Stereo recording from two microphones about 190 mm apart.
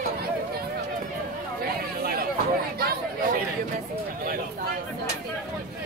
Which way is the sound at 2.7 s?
55° right (ahead or behind).